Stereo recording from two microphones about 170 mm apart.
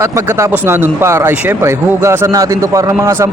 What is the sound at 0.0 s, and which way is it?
Speech, 15° right (ahead or behind).